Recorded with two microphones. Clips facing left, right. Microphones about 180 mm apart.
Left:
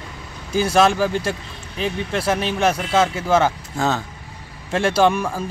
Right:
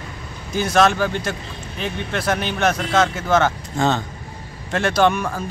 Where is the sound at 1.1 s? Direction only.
30° left (ahead or behind).